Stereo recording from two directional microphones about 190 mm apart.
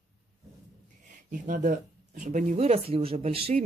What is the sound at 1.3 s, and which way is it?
Speech, 45° right (ahead or behind).